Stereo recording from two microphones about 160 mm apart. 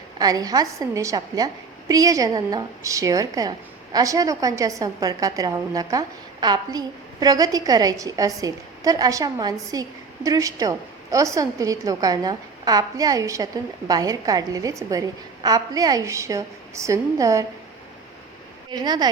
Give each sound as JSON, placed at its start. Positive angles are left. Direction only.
{"t": 0.2, "sound": "a woman's voice", "side_deg": -25}
{"t": 18.7, "sound": "a woman's voice", "side_deg": -25}